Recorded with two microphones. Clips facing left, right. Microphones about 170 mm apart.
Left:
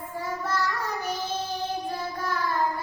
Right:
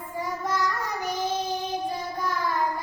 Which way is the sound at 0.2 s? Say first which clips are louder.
Right 1 dB; 15° right (ahead or behind).